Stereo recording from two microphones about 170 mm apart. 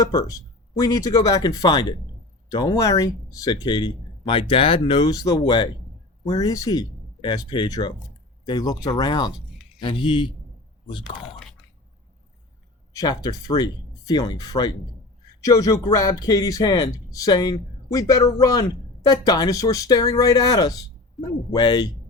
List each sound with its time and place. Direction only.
0.0 s speech: 20° left (ahead or behind)
12.9 s speech: 20° left (ahead or behind)
21.2 s speech: centre (ahead or behind)
21.5 s speech: 25° left (ahead or behind)